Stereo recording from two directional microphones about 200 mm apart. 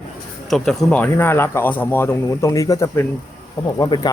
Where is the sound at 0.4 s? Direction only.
Centre (ahead or behind).